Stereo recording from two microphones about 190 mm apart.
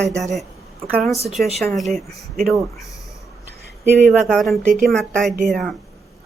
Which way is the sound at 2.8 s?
15° left (ahead or behind).